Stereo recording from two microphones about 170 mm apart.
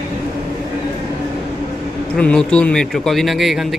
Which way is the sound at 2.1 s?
5° left (ahead or behind).